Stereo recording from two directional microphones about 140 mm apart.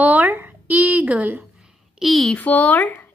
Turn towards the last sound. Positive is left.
turn(degrees=10)  # may be behind; listen again after turning